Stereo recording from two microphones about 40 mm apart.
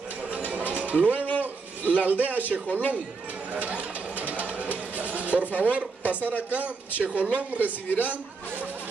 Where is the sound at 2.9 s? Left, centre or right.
Right.